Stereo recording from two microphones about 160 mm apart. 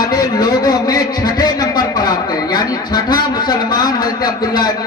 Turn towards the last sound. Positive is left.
turn(degrees=25)  # may be behind; listen again after turning